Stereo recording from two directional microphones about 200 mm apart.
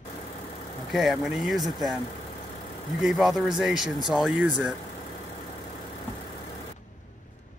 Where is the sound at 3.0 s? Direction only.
Centre (ahead or behind).